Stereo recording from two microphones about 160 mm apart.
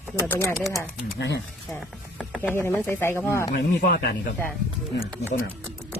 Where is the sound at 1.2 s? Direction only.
90° left.